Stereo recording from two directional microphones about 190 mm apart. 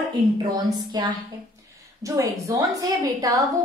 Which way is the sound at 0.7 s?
20° right (ahead or behind).